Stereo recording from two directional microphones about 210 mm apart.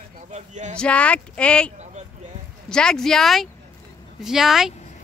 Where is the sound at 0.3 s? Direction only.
35° right (ahead or behind).